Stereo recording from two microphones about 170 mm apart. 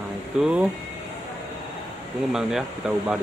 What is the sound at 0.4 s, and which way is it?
Speech, 5° right (ahead or behind).